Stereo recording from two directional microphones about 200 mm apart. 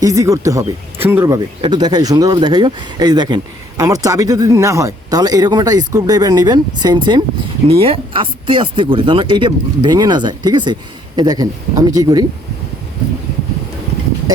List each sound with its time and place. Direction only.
0.0 s speech: 15° right (ahead or behind)